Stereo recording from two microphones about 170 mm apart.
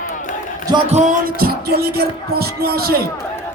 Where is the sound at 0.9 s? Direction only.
45° right (ahead or behind).